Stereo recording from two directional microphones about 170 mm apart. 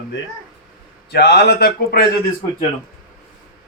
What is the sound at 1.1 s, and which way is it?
Speech, 75° left (ahead or behind).